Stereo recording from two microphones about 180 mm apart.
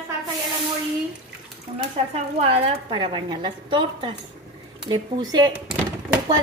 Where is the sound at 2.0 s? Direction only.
35° right (ahead or behind).